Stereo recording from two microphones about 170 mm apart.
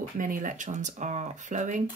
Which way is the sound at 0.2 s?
50° right (ahead or behind).